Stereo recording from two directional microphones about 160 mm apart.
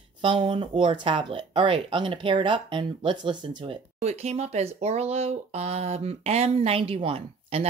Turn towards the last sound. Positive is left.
turn(degrees=-35)  # may be behind; listen again after turning